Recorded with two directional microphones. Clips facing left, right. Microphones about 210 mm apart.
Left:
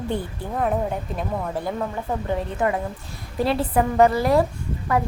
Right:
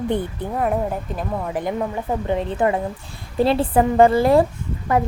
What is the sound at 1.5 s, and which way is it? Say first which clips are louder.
A woman's voice: right 3 dB; 20° right (ahead or behind).